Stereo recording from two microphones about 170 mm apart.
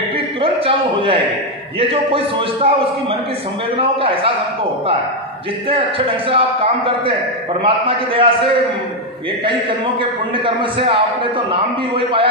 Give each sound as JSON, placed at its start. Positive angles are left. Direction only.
{"t": 0.4, "sound": "a sound", "side_deg": -35}
{"t": 1.8, "sound": "a man's voice", "side_deg": -35}
{"t": 5.7, "sound": "a man's voice", "side_deg": -30}
{"t": 10.3, "sound": "a man's voice", "side_deg": -30}